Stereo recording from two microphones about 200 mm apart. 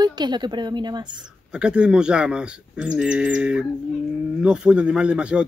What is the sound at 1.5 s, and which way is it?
Speech, 5° right (ahead or behind).